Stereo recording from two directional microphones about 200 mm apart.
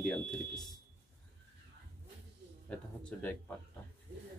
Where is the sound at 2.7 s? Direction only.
5° left (ahead or behind).